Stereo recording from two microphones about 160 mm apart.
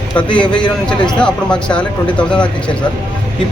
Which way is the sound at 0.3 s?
30° left (ahead or behind).